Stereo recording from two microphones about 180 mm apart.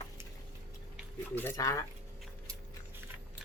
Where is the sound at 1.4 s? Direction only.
15° left (ahead or behind).